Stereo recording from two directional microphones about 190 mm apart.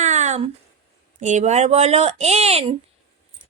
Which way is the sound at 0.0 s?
40° right (ahead or behind).